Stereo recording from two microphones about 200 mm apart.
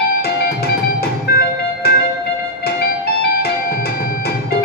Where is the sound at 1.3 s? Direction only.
50° left (ahead or behind).